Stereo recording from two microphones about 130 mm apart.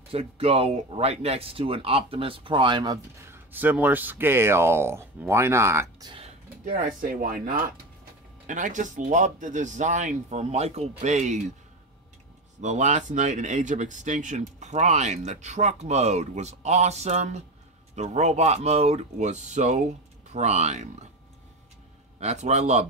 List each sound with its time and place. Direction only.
0.1 s speech: 50° right (ahead or behind); by 3.0 s 35° right (ahead or behind)
3.3 s speech: 15° right (ahead or behind)
6.6 s speech: 90° right
8.5 s speech: 75° right (ahead or behind)
12.5 s speech: 65° right (ahead or behind)
22.2 s speech: 60° right (ahead or behind)